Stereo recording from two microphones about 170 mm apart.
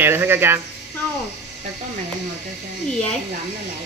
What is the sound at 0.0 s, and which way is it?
Speech, 15° right (ahead or behind).